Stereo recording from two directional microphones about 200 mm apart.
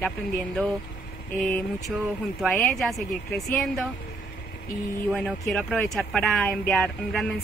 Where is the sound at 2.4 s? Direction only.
Centre (ahead or behind).